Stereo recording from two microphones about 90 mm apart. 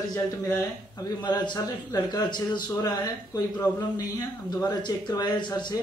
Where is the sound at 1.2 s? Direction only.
55° left (ahead or behind).